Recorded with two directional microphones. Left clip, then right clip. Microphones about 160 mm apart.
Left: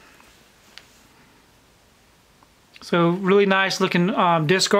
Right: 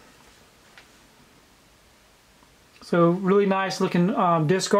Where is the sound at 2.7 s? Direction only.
25° left (ahead or behind).